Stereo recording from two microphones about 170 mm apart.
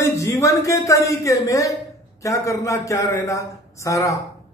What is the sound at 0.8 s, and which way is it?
A man's voice, 20° left (ahead or behind).